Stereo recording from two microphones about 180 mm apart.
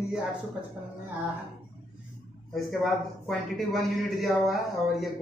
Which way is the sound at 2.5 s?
Centre (ahead or behind).